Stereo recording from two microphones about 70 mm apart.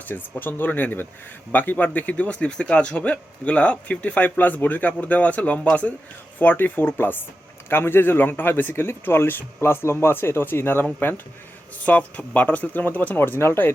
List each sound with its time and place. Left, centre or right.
0.0 s a man's voice: left
11.9 s a man's voice: left